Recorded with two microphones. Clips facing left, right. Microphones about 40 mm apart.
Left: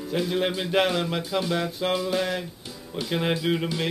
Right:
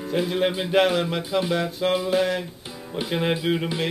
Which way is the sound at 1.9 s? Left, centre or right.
Centre.